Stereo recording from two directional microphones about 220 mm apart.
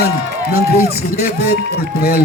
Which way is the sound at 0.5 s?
45° left (ahead or behind).